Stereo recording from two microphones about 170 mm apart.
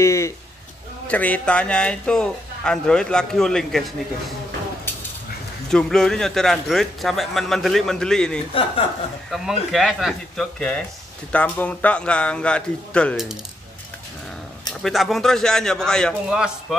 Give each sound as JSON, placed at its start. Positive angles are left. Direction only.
{"t": 0.0, "sound": "a sound", "side_deg": 15}
{"t": 1.0, "sound": "a man's voice", "side_deg": 10}
{"t": 5.7, "sound": "a man's voice", "side_deg": 5}
{"t": 14.8, "sound": "a man's voice", "side_deg": 0}